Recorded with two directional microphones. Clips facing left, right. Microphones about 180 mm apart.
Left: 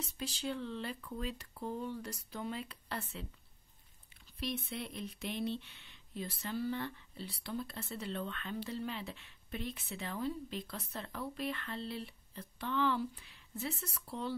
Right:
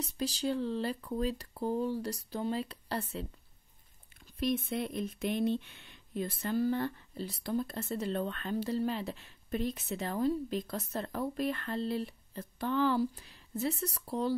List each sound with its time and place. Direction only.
0.0 s speech: 40° right (ahead or behind)
4.4 s speech: 50° right (ahead or behind)